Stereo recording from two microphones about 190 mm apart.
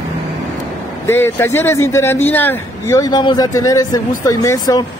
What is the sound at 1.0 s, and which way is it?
A man's voice, 15° left (ahead or behind).